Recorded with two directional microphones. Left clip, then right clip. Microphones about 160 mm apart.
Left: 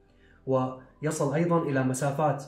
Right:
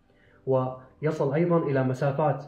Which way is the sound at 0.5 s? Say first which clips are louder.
Right 2 dB; 20° right (ahead or behind).